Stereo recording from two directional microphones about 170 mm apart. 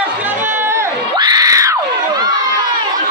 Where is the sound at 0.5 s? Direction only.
15° right (ahead or behind).